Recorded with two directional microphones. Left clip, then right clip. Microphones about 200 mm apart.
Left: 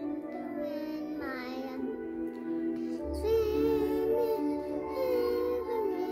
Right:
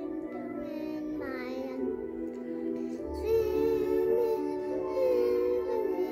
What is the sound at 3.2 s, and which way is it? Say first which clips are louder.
Music: right 1 dB; 15° left (ahead or behind).